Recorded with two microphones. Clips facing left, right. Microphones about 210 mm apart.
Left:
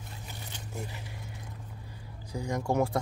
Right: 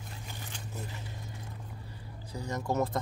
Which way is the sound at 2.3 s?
10° left (ahead or behind).